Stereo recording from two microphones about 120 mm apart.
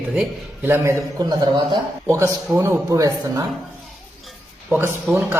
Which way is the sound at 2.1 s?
20° right (ahead or behind).